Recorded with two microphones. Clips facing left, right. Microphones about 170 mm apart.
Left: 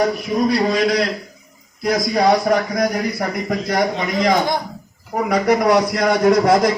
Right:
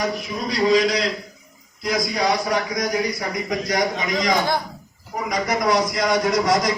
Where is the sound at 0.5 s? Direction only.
55° left (ahead or behind).